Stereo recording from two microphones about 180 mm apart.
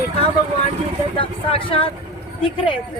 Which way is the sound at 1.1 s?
30° left (ahead or behind).